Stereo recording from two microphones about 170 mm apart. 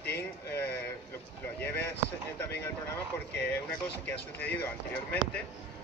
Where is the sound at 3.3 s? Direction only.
80° left.